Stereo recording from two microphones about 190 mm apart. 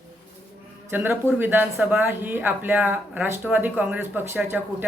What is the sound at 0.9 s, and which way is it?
Speech, 10° right (ahead or behind).